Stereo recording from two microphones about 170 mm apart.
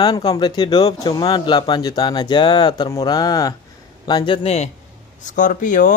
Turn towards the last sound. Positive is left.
turn(degrees=50)  # may be behind; listen again after turning